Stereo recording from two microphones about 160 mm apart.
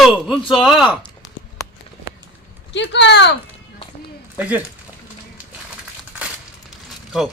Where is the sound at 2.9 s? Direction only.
90° left.